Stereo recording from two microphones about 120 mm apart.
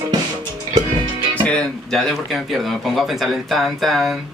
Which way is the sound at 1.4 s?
5° left (ahead or behind).